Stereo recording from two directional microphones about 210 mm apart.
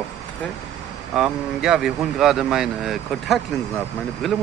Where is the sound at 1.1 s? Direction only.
Centre (ahead or behind).